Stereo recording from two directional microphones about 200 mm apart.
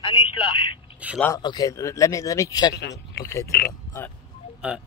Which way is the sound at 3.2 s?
15° left (ahead or behind).